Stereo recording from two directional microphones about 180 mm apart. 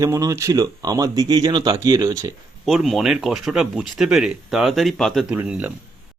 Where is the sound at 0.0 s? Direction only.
20° right (ahead or behind).